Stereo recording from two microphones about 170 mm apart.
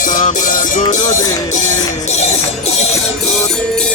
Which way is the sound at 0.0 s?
45° left (ahead or behind).